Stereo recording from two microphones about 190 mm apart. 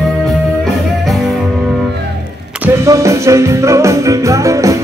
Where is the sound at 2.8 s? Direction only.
15° right (ahead or behind).